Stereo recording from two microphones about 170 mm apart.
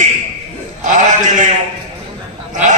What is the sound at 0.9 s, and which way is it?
A man's voice, 50° right (ahead or behind).